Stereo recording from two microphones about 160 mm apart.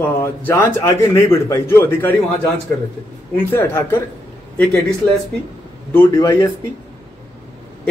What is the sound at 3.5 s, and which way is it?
Speech, 15° left (ahead or behind).